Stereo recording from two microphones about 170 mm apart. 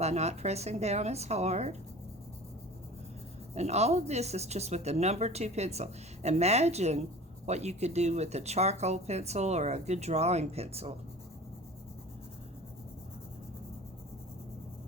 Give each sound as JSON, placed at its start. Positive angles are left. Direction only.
{"t": 0.0, "sound": "speech", "side_deg": -40}
{"t": 3.5, "sound": "speech", "side_deg": -40}